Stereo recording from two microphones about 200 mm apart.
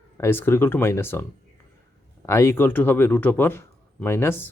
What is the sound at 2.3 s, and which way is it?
Speech, 15° left (ahead or behind).